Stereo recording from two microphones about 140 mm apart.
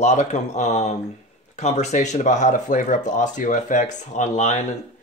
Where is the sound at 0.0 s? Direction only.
55° left (ahead or behind).